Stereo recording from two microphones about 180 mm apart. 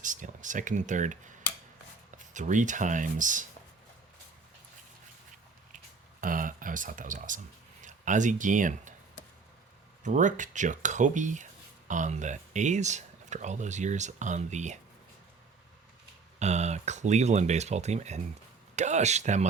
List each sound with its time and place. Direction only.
0.0 s speech: 45° right (ahead or behind)
2.3 s speech: 45° right (ahead or behind)
5.7 s a sound: 50° right (ahead or behind)
10.0 s speech: 45° right (ahead or behind)
16.4 s speech: 40° right (ahead or behind)